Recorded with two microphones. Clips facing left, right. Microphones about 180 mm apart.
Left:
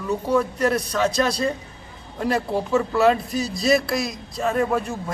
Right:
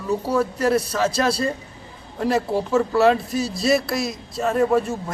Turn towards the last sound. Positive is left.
turn(degrees=0)  # may be behind; listen again after turning